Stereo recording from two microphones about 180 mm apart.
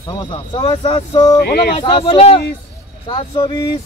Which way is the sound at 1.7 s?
30° left (ahead or behind).